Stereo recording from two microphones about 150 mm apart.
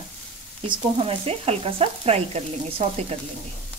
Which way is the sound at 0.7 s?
40° right (ahead or behind).